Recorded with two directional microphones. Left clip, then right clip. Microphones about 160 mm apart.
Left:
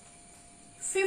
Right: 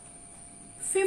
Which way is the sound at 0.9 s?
Centre (ahead or behind).